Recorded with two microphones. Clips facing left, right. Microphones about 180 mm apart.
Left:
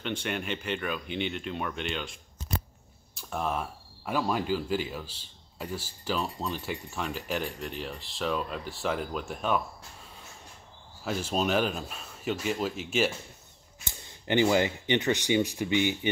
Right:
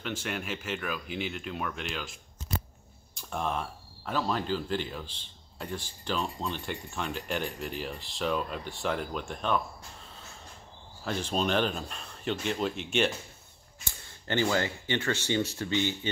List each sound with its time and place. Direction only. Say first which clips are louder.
0.0 s speech: left 2 dB; centre (ahead or behind)
3.2 s speech: left 1 dB; centre (ahead or behind)
11.1 s speech: left 1 dB; 5° left (ahead or behind)
13.8 s speech: left 4 dB; 15° left (ahead or behind)